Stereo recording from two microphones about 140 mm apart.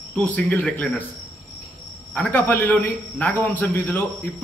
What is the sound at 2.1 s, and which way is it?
A man's voice, 10° left (ahead or behind).